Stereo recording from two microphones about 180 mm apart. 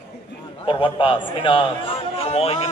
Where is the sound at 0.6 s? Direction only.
25° left (ahead or behind).